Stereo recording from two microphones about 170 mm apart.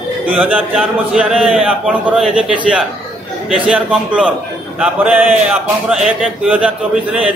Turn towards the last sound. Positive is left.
turn(degrees=-5)  # may be behind; listen again after turning